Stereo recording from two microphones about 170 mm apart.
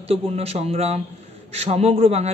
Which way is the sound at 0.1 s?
35° right (ahead or behind).